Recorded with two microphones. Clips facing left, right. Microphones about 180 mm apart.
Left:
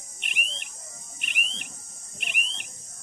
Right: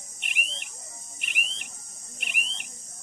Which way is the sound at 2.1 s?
Centre (ahead or behind).